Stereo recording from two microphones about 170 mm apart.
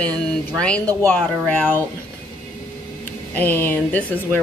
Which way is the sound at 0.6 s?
5° left (ahead or behind).